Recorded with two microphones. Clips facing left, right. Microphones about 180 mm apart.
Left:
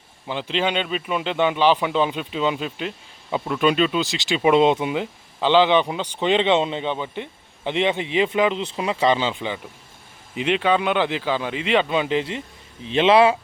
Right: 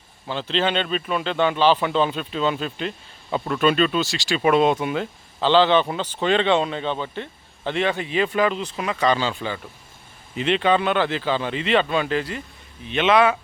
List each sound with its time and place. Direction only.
0.3 s speech: 15° left (ahead or behind); by 13.3 s 30° left (ahead or behind)